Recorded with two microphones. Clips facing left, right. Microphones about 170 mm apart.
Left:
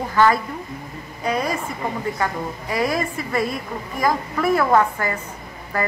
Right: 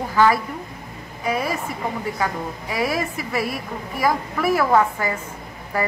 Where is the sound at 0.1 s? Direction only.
5° right (ahead or behind).